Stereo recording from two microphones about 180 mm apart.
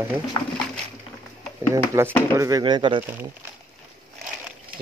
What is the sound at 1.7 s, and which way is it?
Speech, 15° right (ahead or behind).